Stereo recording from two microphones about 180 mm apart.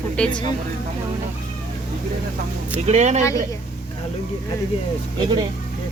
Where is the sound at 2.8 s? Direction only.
40° right (ahead or behind).